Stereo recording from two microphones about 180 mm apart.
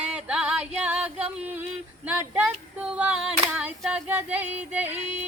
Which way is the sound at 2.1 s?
5° right (ahead or behind).